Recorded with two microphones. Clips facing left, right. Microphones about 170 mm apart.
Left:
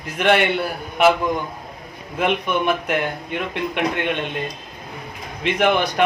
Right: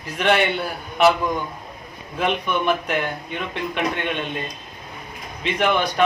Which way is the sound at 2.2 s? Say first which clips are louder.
Left 2 dB; 10° left (ahead or behind).